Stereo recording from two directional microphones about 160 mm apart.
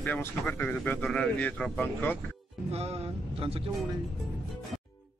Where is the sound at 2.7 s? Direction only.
40° right (ahead or behind).